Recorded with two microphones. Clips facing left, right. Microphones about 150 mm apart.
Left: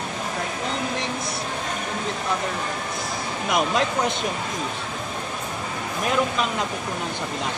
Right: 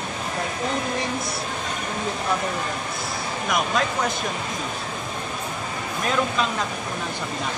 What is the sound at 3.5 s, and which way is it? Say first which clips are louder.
Speech: left 2 dB; 25° left (ahead or behind).